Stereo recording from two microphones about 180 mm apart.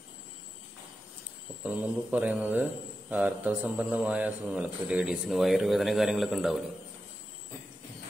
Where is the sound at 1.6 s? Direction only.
5° right (ahead or behind).